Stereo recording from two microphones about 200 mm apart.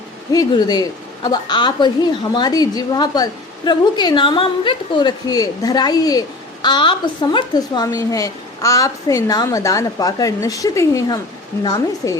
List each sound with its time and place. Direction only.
0.3 s a woman's voice: 20° left (ahead or behind)